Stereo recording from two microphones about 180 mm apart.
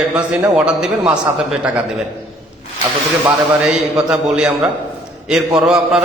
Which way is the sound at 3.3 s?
Centre (ahead or behind).